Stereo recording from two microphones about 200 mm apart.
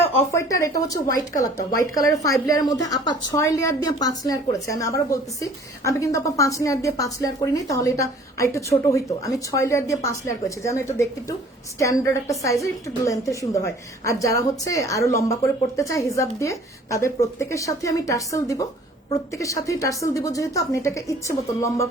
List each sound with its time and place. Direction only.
0.3 s a woman's voice: 15° left (ahead or behind)